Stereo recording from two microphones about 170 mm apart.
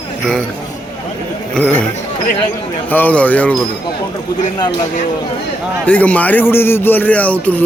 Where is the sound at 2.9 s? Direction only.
10° left (ahead or behind).